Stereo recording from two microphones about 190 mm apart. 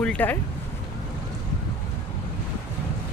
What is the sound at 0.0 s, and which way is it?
Speech, 5° left (ahead or behind).